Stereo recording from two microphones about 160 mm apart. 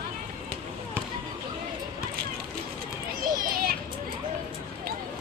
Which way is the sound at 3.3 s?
65° right (ahead or behind).